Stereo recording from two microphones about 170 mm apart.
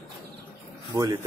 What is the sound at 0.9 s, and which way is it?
Speech, 25° right (ahead or behind).